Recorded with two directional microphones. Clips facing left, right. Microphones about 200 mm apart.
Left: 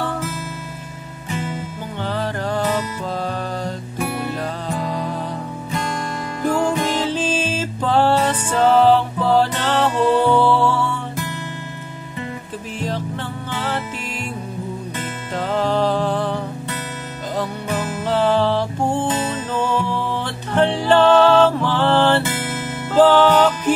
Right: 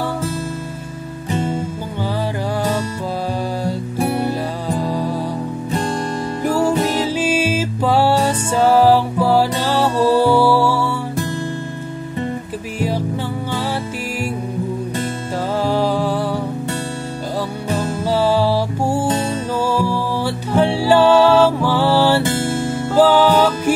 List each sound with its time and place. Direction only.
1.3 s music: 30° right (ahead or behind)
4.0 s music: 35° right (ahead or behind)
6.4 s music: 10° right (ahead or behind)
15.5 s music: 10° right (ahead or behind)
17.6 s music: 30° right (ahead or behind)
18.0 s music: 10° right (ahead or behind)
22.3 s music: 30° right (ahead or behind)
22.9 s music: 10° right (ahead or behind)